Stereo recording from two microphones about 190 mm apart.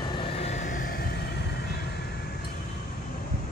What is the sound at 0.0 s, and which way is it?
Vehicle, 25° left (ahead or behind).